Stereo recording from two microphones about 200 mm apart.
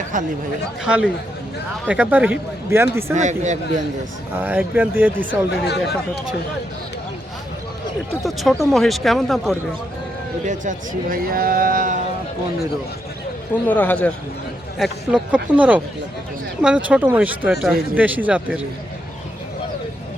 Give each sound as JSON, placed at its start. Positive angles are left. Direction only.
{"t": 0.9, "sound": "speech", "side_deg": -5}
{"t": 3.2, "sound": "speech", "side_deg": -35}
{"t": 4.4, "sound": "speech", "side_deg": -10}
{"t": 5.5, "sound": "speech", "side_deg": 55}
{"t": 8.2, "sound": "speech", "side_deg": 0}
{"t": 10.4, "sound": "speech", "side_deg": -40}
{"t": 13.7, "sound": "a man's voice", "side_deg": 10}
{"t": 14.8, "sound": "speech", "side_deg": -5}